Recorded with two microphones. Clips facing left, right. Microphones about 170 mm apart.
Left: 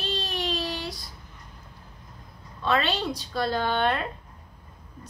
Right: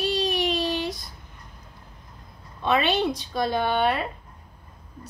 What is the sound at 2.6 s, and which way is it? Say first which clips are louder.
Speech: right 3 dB; 15° right (ahead or behind).